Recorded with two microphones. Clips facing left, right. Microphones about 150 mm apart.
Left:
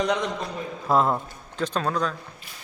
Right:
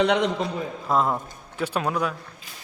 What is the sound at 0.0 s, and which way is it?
Speech, 65° right (ahead or behind).